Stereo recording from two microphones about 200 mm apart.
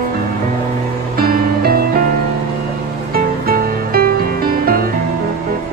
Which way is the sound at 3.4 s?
50° right (ahead or behind).